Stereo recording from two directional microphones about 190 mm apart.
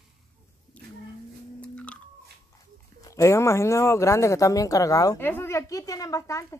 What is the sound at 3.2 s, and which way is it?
Speech, 15° left (ahead or behind).